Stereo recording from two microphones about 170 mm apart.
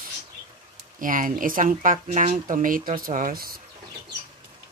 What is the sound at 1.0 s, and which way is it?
Speech, 50° right (ahead or behind).